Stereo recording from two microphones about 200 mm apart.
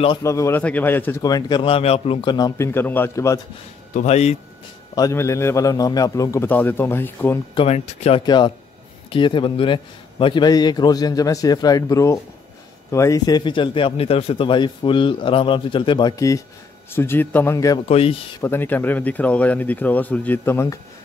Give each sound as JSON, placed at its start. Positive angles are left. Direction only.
{"t": 0.2, "sound": "a man's voice", "side_deg": 15}
{"t": 3.9, "sound": "speech", "side_deg": 35}
{"t": 4.9, "sound": "a man's voice", "side_deg": 15}
{"t": 7.5, "sound": "speech", "side_deg": 30}
{"t": 8.2, "sound": "a man's voice", "side_deg": 20}
{"t": 17.8, "sound": "a man's voice", "side_deg": 30}
{"t": 18.4, "sound": "a man's voice", "side_deg": 10}